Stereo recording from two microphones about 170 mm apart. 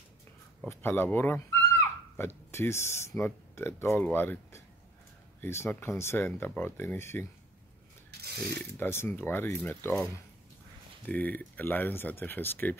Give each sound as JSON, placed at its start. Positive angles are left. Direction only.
{"t": 0.7, "sound": "speech", "side_deg": 10}
{"t": 8.1, "sound": "a sound", "side_deg": -70}
{"t": 8.7, "sound": "speech", "side_deg": 15}
{"t": 11.1, "sound": "speech", "side_deg": 10}